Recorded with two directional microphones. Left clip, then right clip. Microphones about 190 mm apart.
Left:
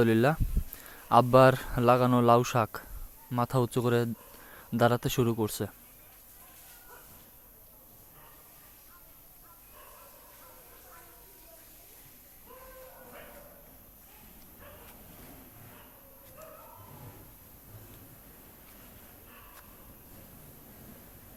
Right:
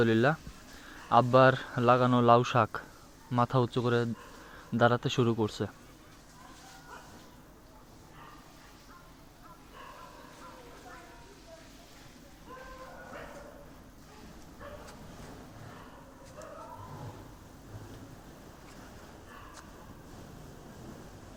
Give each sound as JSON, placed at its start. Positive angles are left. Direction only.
{"t": 0.0, "sound": "a man's voice", "side_deg": 30}